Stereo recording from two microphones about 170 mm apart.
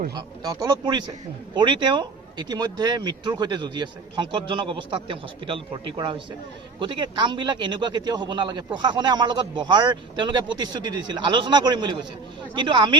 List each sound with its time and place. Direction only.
0.4 s speech: 20° right (ahead or behind)